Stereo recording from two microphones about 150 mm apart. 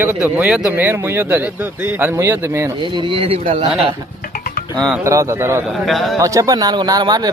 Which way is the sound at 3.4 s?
55° right (ahead or behind).